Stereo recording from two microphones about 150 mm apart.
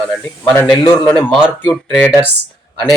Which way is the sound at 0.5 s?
15° left (ahead or behind).